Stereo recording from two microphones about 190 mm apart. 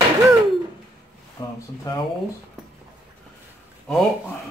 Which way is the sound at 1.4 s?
20° left (ahead or behind).